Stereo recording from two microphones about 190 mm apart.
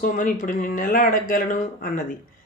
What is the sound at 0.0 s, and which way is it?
Speech, 45° left (ahead or behind).